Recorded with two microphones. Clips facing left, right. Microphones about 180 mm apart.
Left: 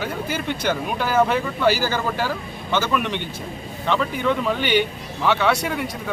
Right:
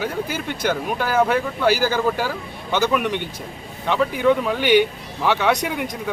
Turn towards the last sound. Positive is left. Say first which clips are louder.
# right 1 dB
turn(degrees=-15)  # may be behind; listen again after turning